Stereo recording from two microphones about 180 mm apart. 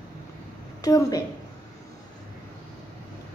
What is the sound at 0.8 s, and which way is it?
Speech, 20° left (ahead or behind).